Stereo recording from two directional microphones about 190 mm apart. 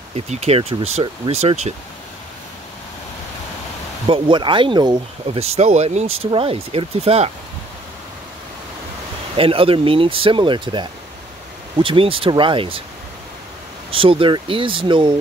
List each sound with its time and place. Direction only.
0.3 s speech: 35° right (ahead or behind)
4.1 s speech: 25° right (ahead or behind)
9.4 s speech: 30° right (ahead or behind)
13.8 s speech: 30° right (ahead or behind)